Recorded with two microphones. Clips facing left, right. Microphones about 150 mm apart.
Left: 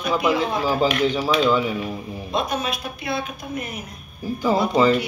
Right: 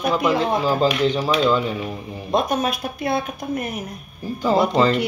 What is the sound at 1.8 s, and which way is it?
Speech, 15° right (ahead or behind).